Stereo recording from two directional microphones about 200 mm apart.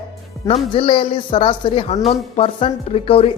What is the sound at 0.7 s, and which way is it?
Speech, 25° left (ahead or behind).